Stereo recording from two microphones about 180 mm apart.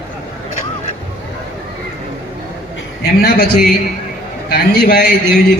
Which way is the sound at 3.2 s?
60° left (ahead or behind).